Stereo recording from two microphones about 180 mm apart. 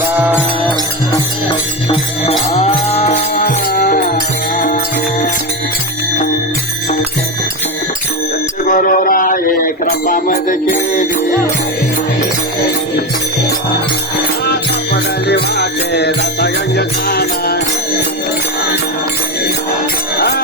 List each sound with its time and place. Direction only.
0.1 s music: 10° right (ahead or behind)
1.5 s music: 30° left (ahead or behind)
2.5 s cattle: 35° left (ahead or behind)
3.7 s music: 50° left (ahead or behind)
8.6 s a sound: 50° left (ahead or behind)
10.1 s music: 50° left (ahead or behind)
15.3 s music: 65° left (ahead or behind)
20.1 s music: 60° left (ahead or behind)